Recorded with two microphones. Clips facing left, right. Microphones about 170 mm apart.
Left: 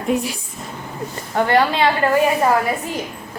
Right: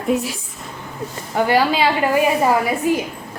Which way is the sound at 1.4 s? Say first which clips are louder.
Even; 5° right (ahead or behind).